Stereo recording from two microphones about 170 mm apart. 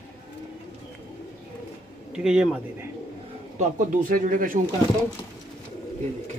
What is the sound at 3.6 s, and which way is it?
Speech, 50° right (ahead or behind).